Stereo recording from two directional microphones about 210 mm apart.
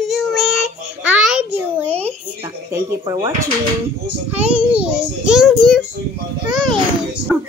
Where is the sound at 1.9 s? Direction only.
30° right (ahead or behind).